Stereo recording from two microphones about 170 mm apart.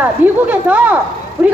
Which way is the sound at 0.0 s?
10° right (ahead or behind).